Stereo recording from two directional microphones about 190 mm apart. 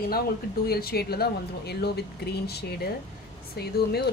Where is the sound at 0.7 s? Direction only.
55° left (ahead or behind).